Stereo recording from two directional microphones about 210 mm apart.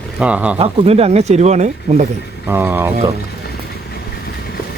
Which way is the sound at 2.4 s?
10° right (ahead or behind).